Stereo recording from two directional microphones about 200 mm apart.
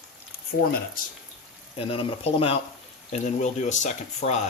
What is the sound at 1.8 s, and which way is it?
Speech, 25° left (ahead or behind).